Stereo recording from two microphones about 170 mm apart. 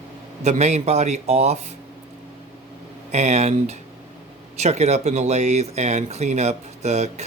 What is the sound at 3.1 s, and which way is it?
Speech, 40° right (ahead or behind).